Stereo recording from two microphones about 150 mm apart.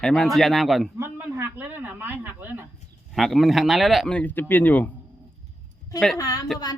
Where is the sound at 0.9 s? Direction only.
15° right (ahead or behind).